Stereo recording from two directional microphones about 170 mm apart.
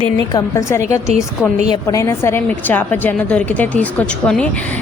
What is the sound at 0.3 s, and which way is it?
A woman's voice, 20° left (ahead or behind).